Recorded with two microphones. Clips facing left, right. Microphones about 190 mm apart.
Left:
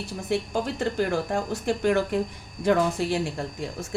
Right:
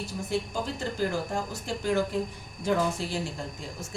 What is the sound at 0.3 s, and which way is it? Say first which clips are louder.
Speech: left 5 dB; 60° left (ahead or behind).